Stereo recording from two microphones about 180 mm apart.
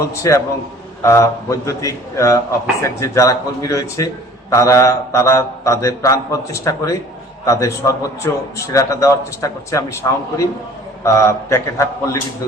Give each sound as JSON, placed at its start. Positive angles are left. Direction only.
{"t": 0.2, "sound": "a man's voice", "side_deg": 15}